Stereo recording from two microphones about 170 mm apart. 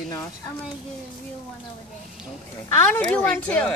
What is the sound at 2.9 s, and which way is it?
Speech, 10° left (ahead or behind).